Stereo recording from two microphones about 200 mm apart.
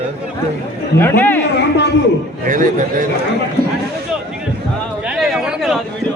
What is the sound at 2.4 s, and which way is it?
Speech, 40° right (ahead or behind).